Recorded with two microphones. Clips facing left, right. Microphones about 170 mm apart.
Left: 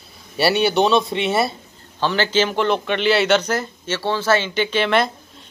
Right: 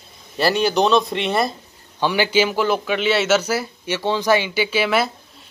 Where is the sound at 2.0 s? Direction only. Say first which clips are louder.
Right 1 dB; 10° right (ahead or behind).